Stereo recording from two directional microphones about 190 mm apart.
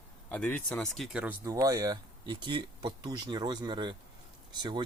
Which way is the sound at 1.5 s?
15° right (ahead or behind).